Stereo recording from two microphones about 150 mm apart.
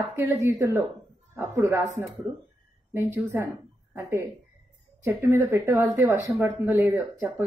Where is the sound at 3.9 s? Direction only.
20° right (ahead or behind).